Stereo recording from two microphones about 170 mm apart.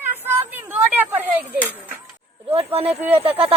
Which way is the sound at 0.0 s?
10° right (ahead or behind).